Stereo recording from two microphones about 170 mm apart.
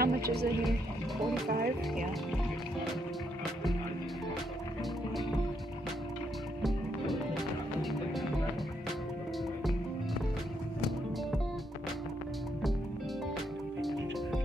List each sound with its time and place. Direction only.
0.0 s music: 65° right (ahead or behind)
1.5 s speech: 60° right (ahead or behind)
6.6 s music: centre (ahead or behind)